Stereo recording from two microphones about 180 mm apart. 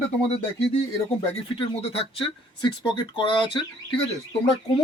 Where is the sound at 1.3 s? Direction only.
30° left (ahead or behind).